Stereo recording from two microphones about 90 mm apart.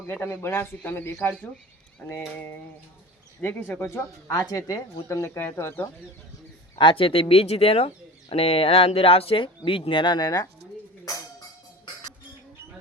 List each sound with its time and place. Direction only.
0.1 s speech: 30° left (ahead or behind)
3.4 s speech: 20° left (ahead or behind)
3.8 s speech: 30° left (ahead or behind)
6.7 s speech: 75° left (ahead or behind); by 10.4 s 50° left (ahead or behind)